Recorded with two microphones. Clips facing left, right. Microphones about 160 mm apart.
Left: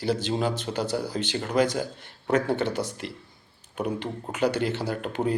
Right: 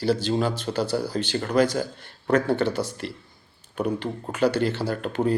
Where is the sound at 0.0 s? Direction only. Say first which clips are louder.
Right 3 dB; 20° left (ahead or behind).